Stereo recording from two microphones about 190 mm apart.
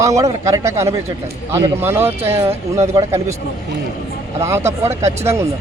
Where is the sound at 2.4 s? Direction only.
15° right (ahead or behind).